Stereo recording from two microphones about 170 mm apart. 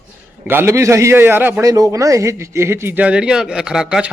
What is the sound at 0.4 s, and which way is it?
A man's voice, 15° right (ahead or behind).